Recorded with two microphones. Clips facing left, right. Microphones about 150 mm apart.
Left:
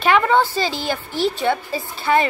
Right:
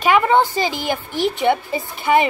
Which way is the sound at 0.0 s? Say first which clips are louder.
Right 1 dB; 15° right (ahead or behind).